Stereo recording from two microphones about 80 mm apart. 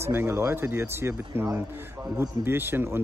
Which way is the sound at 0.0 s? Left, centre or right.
Right.